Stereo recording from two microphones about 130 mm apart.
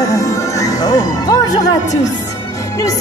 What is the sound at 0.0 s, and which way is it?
Music, 25° left (ahead or behind).